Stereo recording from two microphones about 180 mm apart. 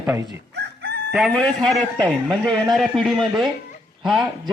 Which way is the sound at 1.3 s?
5° left (ahead or behind).